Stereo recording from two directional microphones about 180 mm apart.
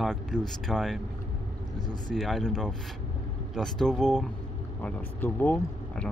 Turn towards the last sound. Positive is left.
turn(degrees=5)  # may be behind; listen again after turning